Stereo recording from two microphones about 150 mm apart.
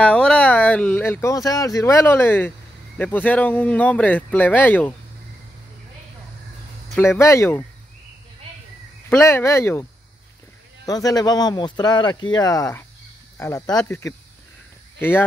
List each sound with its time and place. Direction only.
0.0 s speech: 5° left (ahead or behind)
7.0 s speech: 20° left (ahead or behind)
9.2 s speech: 20° left (ahead or behind)
10.9 s speech: 25° left (ahead or behind)